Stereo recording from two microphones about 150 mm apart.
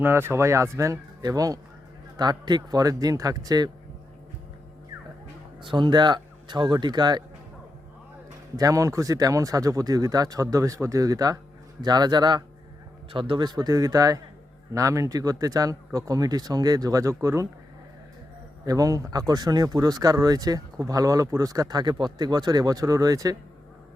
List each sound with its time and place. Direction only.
0.0 s speech: 15° right (ahead or behind)
5.6 s speech: 30° right (ahead or behind)
8.5 s speech: 20° right (ahead or behind)
18.6 s speech: 20° right (ahead or behind)